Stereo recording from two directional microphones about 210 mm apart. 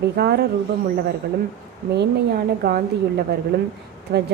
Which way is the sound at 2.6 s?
45° right (ahead or behind).